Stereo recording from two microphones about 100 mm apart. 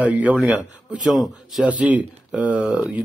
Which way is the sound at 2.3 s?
15° right (ahead or behind).